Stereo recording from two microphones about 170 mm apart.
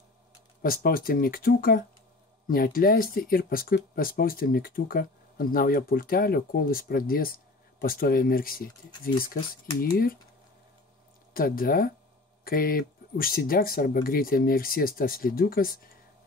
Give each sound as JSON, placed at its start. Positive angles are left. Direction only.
{"t": 0.6, "sound": "speech", "side_deg": 60}
{"t": 11.3, "sound": "speech", "side_deg": 60}